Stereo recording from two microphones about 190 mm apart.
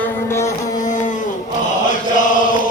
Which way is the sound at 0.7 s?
40° left (ahead or behind).